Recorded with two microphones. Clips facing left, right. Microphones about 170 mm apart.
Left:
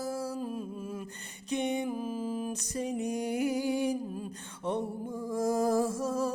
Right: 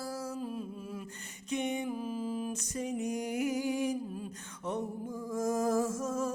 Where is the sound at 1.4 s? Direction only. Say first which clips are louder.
Left 3 dB; 35° left (ahead or behind).